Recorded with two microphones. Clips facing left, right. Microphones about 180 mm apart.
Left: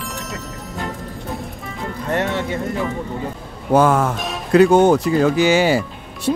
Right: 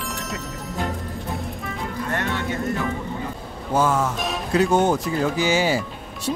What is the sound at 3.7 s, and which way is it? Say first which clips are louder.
Speech: left 6 dB; 60° left (ahead or behind).